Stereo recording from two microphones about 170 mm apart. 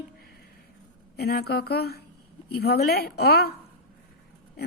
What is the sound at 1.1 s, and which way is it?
A woman's voice, 70° left (ahead or behind).